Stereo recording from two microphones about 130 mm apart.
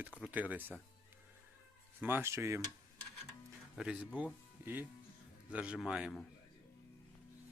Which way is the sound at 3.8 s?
5° right (ahead or behind).